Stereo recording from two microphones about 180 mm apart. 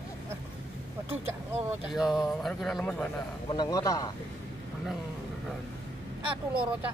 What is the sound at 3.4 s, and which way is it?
Speech, 25° left (ahead or behind).